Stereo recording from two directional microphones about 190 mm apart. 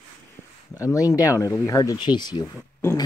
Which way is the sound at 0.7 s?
15° left (ahead or behind).